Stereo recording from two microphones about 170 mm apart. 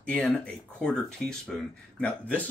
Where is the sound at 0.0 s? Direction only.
5° left (ahead or behind).